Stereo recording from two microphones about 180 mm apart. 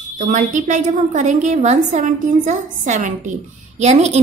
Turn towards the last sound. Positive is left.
turn(degrees=-40)  # may be behind; listen again after turning